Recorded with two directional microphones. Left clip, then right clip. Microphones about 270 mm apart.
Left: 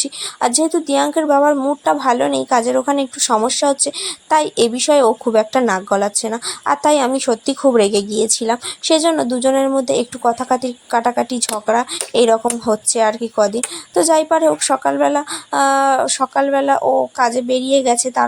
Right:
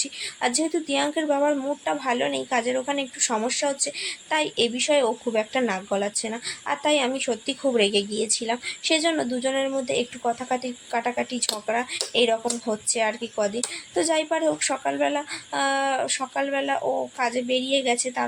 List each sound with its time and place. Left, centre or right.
0.0 s speech: left